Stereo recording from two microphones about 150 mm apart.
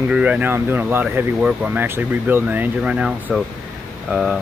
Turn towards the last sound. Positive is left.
turn(degrees=-5)  # may be behind; listen again after turning